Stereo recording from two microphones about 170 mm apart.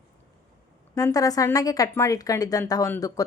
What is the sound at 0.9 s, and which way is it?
Speech, 20° left (ahead or behind).